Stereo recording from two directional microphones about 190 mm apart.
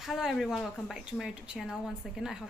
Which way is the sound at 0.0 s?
Centre (ahead or behind).